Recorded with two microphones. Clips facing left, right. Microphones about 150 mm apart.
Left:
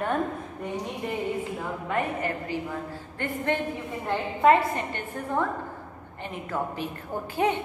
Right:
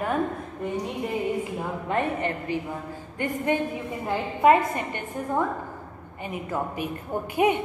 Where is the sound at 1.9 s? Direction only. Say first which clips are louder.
Right 2 dB; 25° right (ahead or behind).